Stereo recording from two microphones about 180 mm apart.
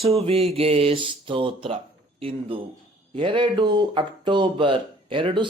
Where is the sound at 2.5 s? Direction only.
30° right (ahead or behind).